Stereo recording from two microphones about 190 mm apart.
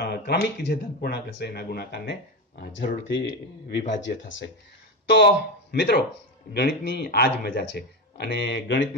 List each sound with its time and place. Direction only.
0.0 s speech: 60° left (ahead or behind)
3.0 s a man's voice: 70° left (ahead or behind)
5.0 s speech: 65° left (ahead or behind)